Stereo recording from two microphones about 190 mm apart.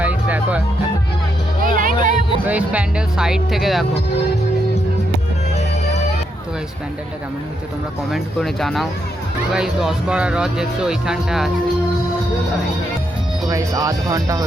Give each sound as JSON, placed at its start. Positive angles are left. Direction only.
{"t": 0.0, "sound": "music", "side_deg": -5}
{"t": 1.6, "sound": "music", "side_deg": -45}
{"t": 2.5, "sound": "speech", "side_deg": -5}
{"t": 8.1, "sound": "speech", "side_deg": 0}
{"t": 13.5, "sound": "speech", "side_deg": -15}